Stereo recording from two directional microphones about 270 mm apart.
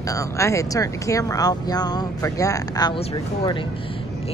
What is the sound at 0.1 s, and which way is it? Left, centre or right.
Speech, centre.